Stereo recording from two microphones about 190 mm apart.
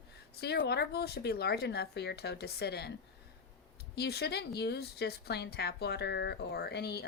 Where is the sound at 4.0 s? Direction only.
60° left (ahead or behind).